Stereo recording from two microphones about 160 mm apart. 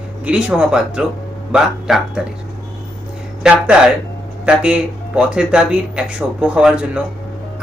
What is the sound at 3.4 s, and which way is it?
Speech, 5° right (ahead or behind).